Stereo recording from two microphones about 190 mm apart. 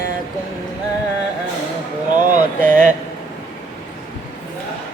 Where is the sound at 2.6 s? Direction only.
45° right (ahead or behind).